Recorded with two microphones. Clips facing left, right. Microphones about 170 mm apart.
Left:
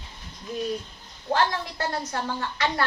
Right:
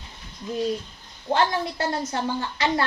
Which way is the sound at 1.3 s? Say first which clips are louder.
Right 2 dB; 25° right (ahead or behind).